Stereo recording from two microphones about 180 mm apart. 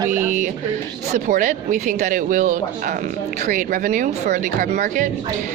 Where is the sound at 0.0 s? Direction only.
15° right (ahead or behind).